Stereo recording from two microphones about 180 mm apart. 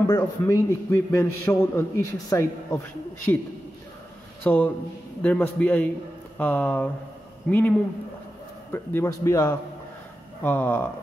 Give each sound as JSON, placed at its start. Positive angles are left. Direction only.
{"t": 0.0, "sound": "a man's voice", "side_deg": 15}
{"t": 8.7, "sound": "a man's voice", "side_deg": 15}